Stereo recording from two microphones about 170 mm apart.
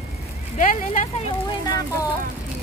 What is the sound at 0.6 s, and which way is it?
Speech, 45° left (ahead or behind).